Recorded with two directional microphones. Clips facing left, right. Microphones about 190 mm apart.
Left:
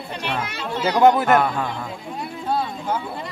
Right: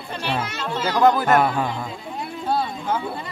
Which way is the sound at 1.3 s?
5° right (ahead or behind).